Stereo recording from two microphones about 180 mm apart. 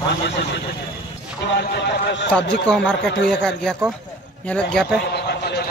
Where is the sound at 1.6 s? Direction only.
70° left (ahead or behind).